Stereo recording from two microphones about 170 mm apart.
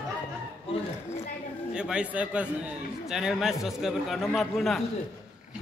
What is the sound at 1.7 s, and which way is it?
A man's voice, 5° right (ahead or behind).